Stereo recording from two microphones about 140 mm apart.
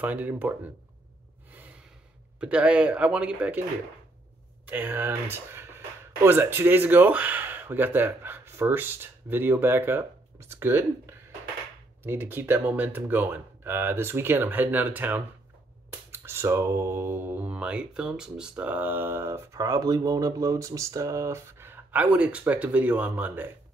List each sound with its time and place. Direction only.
0.0 s speech: 10° right (ahead or behind)
2.4 s speech: 10° right (ahead or behind)
4.6 s speech: 10° right (ahead or behind)